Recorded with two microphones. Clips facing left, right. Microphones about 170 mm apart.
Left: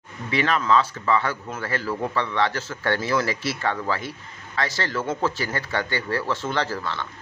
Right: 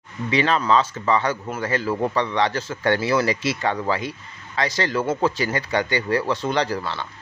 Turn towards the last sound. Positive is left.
turn(degrees=-15)  # may be behind; listen again after turning